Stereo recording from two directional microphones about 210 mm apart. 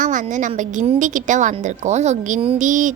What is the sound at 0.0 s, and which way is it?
A woman's voice, 35° right (ahead or behind).